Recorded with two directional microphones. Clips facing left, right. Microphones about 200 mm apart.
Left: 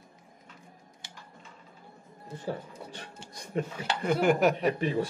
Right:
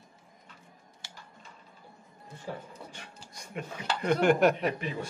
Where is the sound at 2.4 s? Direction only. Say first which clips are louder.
Left 4 dB; 35° left (ahead or behind).